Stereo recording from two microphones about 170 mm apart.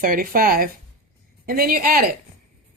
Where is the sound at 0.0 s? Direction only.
55° right (ahead or behind).